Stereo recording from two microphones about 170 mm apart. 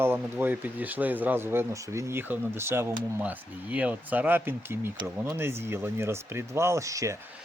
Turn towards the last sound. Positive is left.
turn(degrees=-20)  # may be behind; listen again after turning